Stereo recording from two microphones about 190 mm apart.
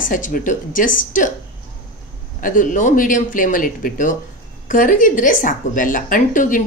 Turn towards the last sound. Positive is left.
turn(degrees=45)  # may be behind; listen again after turning